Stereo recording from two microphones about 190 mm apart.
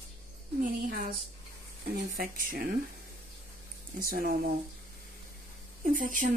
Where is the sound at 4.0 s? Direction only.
50° right (ahead or behind).